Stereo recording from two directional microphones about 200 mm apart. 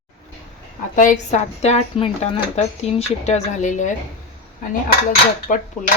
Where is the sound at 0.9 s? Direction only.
40° left (ahead or behind).